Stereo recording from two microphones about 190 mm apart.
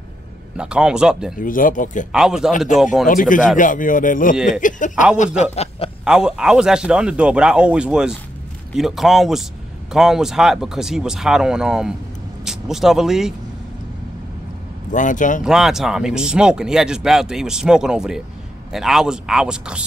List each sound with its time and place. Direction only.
0.6 s speech: 5° right (ahead or behind)
1.4 s speech: 45° left (ahead or behind)
2.1 s speech: 5° right (ahead or behind)
3.1 s a man's voice: 45° left (ahead or behind)
6.0 s speech: 5° right (ahead or behind)
14.9 s speech: 40° left (ahead or behind)
15.4 s speech: centre (ahead or behind)